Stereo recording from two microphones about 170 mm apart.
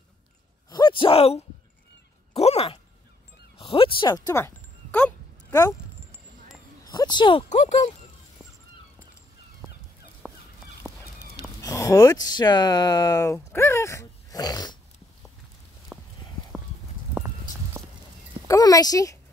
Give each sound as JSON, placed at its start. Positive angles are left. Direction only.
{"t": 0.7, "sound": "a sound", "side_deg": 25}
{"t": 3.5, "sound": "speech", "side_deg": 30}
{"t": 5.5, "sound": "speech", "side_deg": 20}
{"t": 6.8, "sound": "a sound", "side_deg": 25}
{"t": 7.4, "sound": "speech", "side_deg": 45}
{"t": 10.2, "sound": "fowl", "side_deg": -5}
{"t": 11.6, "sound": "speech", "side_deg": 20}
{"t": 15.9, "sound": "clip-clop", "side_deg": -5}
{"t": 17.2, "sound": "clip-clop", "side_deg": -10}
{"t": 18.5, "sound": "speech", "side_deg": 20}